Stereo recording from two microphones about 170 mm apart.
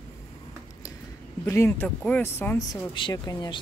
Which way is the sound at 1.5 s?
15° left (ahead or behind).